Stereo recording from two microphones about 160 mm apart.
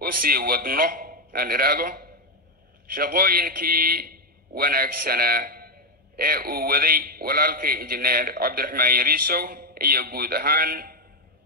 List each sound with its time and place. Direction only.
0.0 s a man's voice: 65° right (ahead or behind)